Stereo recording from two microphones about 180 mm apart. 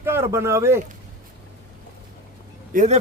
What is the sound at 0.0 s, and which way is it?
Speech, 15° right (ahead or behind).